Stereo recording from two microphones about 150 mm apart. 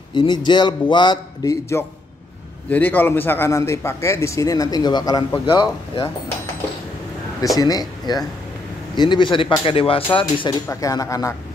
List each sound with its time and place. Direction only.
0.1 s a man's voice: 30° left (ahead or behind)
7.5 s a man's voice: 25° left (ahead or behind)
10.7 s a man's voice: 25° left (ahead or behind)